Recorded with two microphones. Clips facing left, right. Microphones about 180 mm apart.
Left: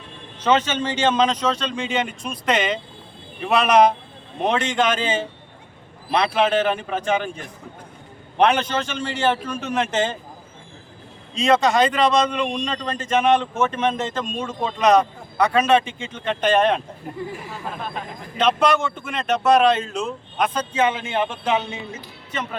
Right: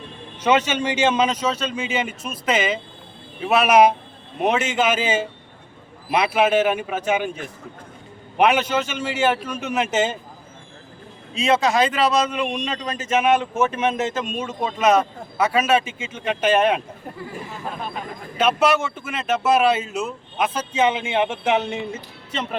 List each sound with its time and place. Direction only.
0.4 s a man's voice: 10° right (ahead or behind)
11.3 s speech: centre (ahead or behind)
18.3 s speech: 5° right (ahead or behind)
20.7 s speech: 25° right (ahead or behind)